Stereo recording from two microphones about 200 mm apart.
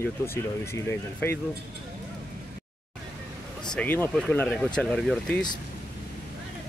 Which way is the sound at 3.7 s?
10° left (ahead or behind).